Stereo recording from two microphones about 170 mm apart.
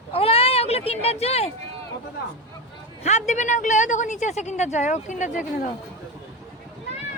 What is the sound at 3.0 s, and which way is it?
A woman's voice, 40° left (ahead or behind).